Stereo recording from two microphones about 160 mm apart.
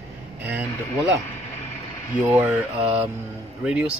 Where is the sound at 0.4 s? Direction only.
10° right (ahead or behind).